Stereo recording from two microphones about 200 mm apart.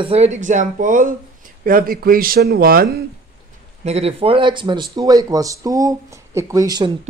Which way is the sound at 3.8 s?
30° right (ahead or behind).